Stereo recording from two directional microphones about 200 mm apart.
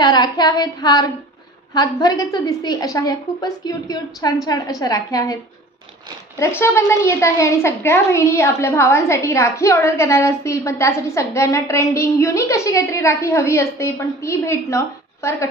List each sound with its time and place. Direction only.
0.0 s a woman's voice: 20° left (ahead or behind)